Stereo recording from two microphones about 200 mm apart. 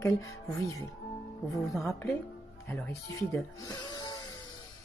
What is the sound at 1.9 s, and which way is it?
Speech, 15° left (ahead or behind).